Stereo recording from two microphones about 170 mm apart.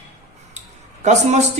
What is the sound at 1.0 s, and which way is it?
Speech, 45° right (ahead or behind).